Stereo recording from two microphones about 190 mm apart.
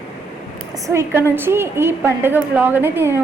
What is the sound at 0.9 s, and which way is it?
A woman's voice, 15° right (ahead or behind).